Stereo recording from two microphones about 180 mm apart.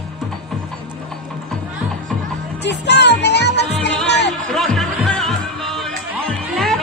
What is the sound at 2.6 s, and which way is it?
Music, 70° left (ahead or behind).